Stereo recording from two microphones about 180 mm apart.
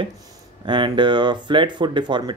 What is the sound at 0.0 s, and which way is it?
A man's voice, 25° right (ahead or behind).